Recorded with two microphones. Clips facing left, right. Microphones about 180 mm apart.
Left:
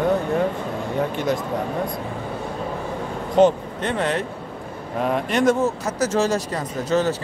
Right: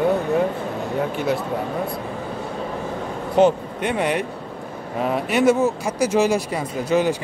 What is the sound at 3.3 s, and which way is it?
Speech, 10° right (ahead or behind).